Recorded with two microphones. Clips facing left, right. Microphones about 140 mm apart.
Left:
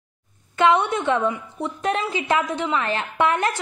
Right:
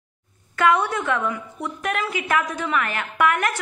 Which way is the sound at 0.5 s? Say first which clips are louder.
Left 2 dB; 25° left (ahead or behind).